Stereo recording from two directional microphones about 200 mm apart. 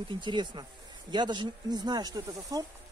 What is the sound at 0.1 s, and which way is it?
Speech, 25° right (ahead or behind).